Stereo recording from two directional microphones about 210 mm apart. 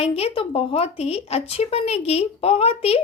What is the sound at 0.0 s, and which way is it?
Speech, 25° left (ahead or behind).